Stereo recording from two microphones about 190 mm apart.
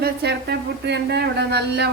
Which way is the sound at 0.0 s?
60° right (ahead or behind).